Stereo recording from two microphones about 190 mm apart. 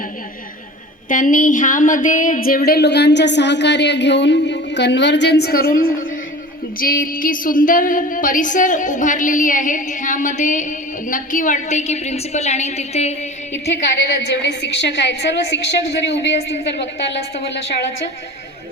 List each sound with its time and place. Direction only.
1.0 s a woman's voice: 45° left (ahead or behind)
13.9 s a woman's voice: 60° left (ahead or behind)